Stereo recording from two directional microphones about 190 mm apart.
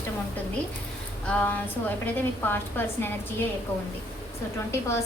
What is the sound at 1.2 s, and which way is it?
A woman's voice, 10° left (ahead or behind).